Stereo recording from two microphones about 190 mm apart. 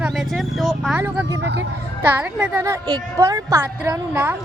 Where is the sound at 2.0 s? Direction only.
10° right (ahead or behind).